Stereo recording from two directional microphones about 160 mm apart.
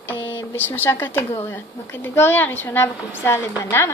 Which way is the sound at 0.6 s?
15° left (ahead or behind).